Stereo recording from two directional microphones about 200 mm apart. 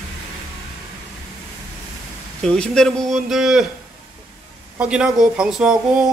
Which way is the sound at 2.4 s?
5° left (ahead or behind).